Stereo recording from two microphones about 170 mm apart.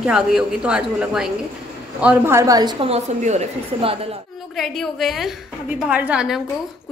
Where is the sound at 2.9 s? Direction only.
40° right (ahead or behind).